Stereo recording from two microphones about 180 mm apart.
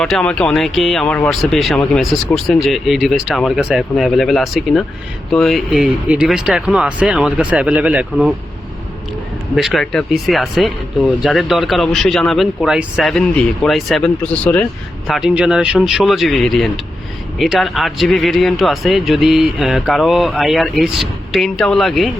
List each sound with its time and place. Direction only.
0.0 s speech: 5° left (ahead or behind)
9.6 s speech: centre (ahead or behind)